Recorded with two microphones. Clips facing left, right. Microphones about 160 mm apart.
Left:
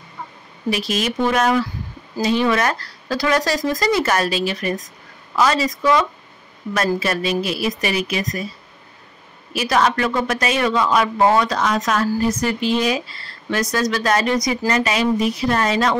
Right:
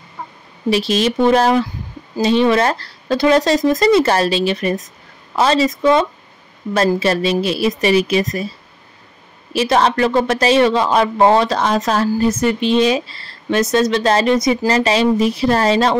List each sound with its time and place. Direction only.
0.7 s speech: 30° right (ahead or behind)
9.5 s speech: 30° right (ahead or behind)